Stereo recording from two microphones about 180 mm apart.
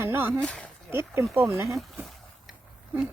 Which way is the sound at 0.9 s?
15° right (ahead or behind).